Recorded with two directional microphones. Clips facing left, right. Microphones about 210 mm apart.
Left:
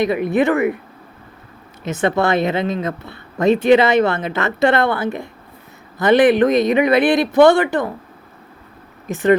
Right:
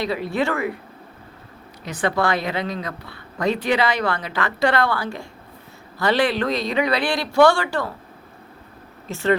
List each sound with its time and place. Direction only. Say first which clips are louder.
0.0 s a woman's voice: left 7 dB; 20° left (ahead or behind)
1.8 s a woman's voice: left 4 dB; 25° left (ahead or behind)
9.0 s speech: left 6 dB; 15° left (ahead or behind)